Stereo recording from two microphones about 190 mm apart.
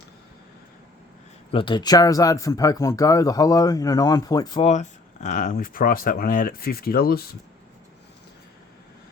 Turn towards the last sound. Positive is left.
turn(degrees=55)  # may be behind; listen again after turning